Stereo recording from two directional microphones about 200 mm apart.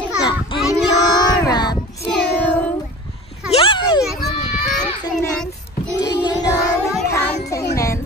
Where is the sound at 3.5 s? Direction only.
25° left (ahead or behind).